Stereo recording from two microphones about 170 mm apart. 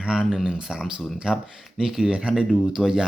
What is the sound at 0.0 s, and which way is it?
Speech, 5° right (ahead or behind).